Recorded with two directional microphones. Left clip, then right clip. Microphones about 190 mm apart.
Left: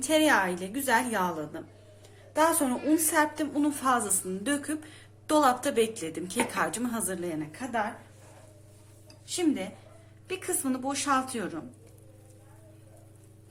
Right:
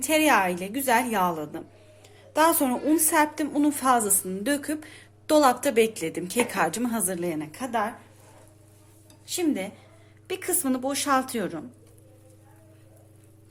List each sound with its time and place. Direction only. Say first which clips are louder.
0.0 s a woman's voice: right 3 dB; 35° right (ahead or behind)
9.3 s a woman's voice: right 2 dB; 45° right (ahead or behind)